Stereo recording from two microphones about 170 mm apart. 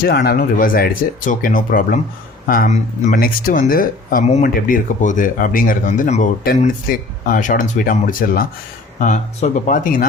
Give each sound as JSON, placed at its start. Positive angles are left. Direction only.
{"t": 0.0, "sound": "speech", "side_deg": 70}
{"t": 3.2, "sound": "speech", "side_deg": 60}